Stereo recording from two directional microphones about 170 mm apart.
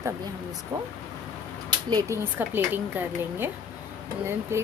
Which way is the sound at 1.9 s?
15° right (ahead or behind).